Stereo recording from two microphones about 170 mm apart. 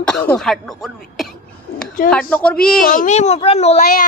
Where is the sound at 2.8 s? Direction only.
55° left (ahead or behind); by 3.8 s 35° left (ahead or behind).